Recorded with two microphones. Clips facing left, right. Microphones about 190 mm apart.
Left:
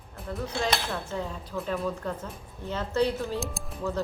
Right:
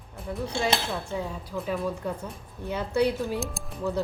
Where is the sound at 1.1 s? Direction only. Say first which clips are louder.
Right 1 dB; 10° right (ahead or behind).